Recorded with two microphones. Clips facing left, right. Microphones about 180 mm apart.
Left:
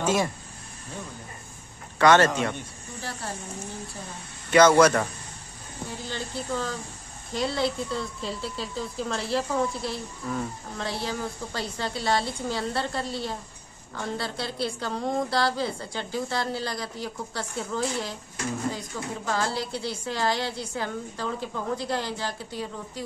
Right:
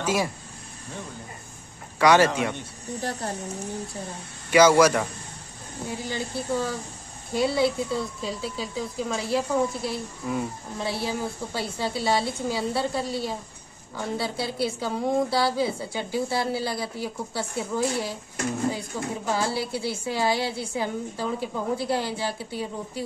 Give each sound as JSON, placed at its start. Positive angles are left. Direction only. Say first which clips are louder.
{"t": 0.0, "sound": "speech", "louder": "left 1 dB", "side_deg": -10}
{"t": 2.0, "sound": "a woman's voice", "louder": "even", "side_deg": -10}
{"t": 3.0, "sound": "speech", "louder": "right 5 dB", "side_deg": -45}
{"t": 4.5, "sound": "a woman's voice", "louder": "even", "side_deg": -10}